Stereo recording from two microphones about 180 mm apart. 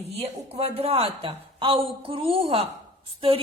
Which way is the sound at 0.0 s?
35° right (ahead or behind).